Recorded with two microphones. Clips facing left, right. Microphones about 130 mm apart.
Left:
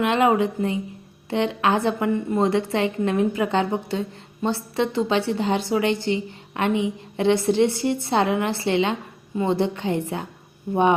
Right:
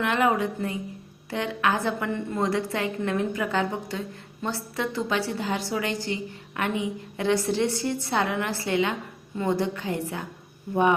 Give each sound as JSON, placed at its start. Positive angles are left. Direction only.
{"t": 0.0, "sound": "a woman's voice", "side_deg": 20}